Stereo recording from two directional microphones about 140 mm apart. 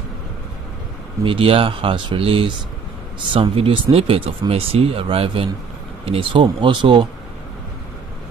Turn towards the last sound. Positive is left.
turn(degrees=-35)  # may be behind; listen again after turning